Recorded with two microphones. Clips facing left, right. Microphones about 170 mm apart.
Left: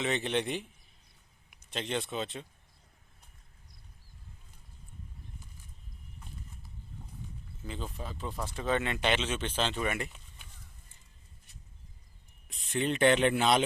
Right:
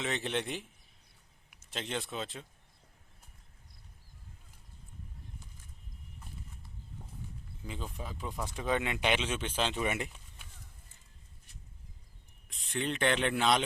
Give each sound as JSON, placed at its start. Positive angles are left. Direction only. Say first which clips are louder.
{"t": 0.0, "sound": "speech", "louder": "left 3 dB", "side_deg": 0}
{"t": 1.7, "sound": "speech", "louder": "left 3 dB", "side_deg": 0}
{"t": 7.6, "sound": "speech", "louder": "left 2 dB", "side_deg": -10}
{"t": 12.5, "sound": "speech", "louder": "left 4 dB", "side_deg": 5}